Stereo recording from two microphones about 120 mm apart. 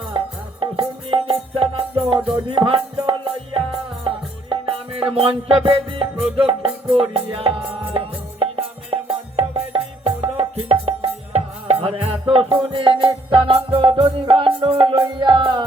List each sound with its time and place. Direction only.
0.6 s music: 45° right (ahead or behind)